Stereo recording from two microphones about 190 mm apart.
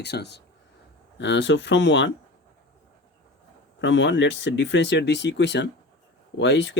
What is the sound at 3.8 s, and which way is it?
Speech, 75° left (ahead or behind).